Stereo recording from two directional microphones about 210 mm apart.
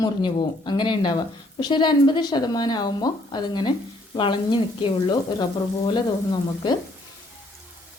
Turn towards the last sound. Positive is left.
turn(degrees=20)  # may be behind; listen again after turning